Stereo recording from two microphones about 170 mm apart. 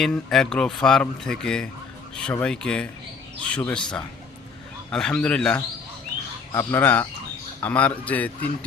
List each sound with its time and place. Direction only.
0.0 s a man's voice: centre (ahead or behind)
4.9 s a man's voice: 5° left (ahead or behind)